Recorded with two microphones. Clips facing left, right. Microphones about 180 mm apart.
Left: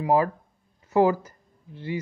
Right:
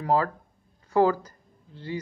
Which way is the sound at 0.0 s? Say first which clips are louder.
Left 3 dB; 15° left (ahead or behind).